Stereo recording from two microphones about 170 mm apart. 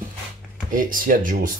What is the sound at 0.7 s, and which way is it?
Speech, 55° right (ahead or behind).